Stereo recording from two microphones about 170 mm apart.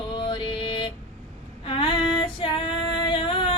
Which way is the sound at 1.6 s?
30° left (ahead or behind).